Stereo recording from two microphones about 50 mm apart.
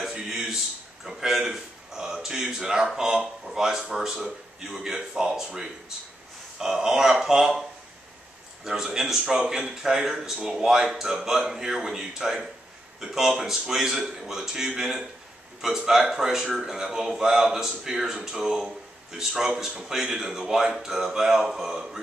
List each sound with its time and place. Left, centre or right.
0.0 s a man's voice: centre
8.6 s a man's voice: centre